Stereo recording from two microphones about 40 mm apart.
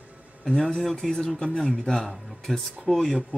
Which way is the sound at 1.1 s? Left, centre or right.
Left.